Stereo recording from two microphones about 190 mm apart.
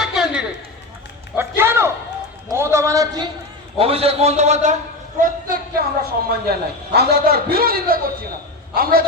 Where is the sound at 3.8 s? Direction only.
30° right (ahead or behind).